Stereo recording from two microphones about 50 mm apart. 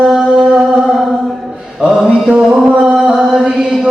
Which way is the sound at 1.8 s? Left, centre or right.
Centre.